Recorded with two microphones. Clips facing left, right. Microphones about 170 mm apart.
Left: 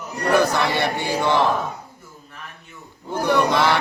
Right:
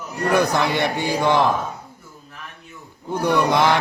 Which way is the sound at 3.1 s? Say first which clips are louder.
Even; 15° right (ahead or behind).